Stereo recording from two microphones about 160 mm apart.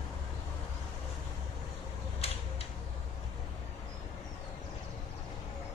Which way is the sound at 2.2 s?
40° left (ahead or behind).